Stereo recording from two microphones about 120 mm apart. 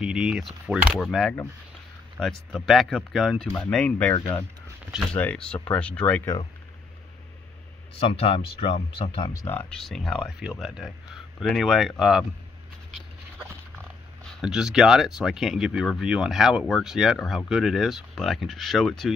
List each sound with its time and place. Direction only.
0.0 s speech: 5° right (ahead or behind); by 4.5 s 20° left (ahead or behind)
5.1 s speech: 10° left (ahead or behind)
8.0 s speech: 50° left (ahead or behind)
9.5 s speech: 15° left (ahead or behind)
9.8 s speech: centre (ahead or behind)
14.4 s speech: 5° right (ahead or behind)